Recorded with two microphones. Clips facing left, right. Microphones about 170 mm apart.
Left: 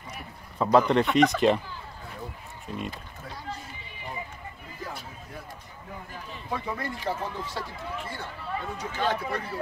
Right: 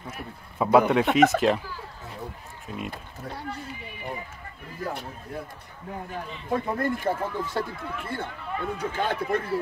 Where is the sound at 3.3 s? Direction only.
65° right (ahead or behind).